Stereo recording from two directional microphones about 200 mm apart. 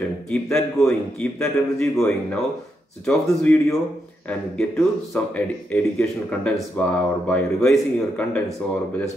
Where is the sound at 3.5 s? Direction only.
10° left (ahead or behind).